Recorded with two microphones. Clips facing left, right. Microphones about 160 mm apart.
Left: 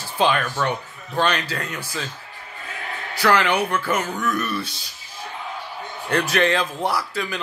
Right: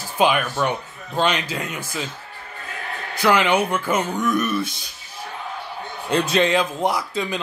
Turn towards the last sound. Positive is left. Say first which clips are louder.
# right 2 dB
turn(degrees=-20)  # may be behind; listen again after turning